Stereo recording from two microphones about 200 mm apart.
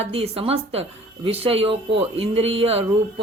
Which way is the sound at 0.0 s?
30° right (ahead or behind).